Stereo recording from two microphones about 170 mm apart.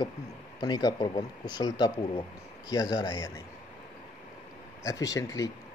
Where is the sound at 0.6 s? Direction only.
25° left (ahead or behind).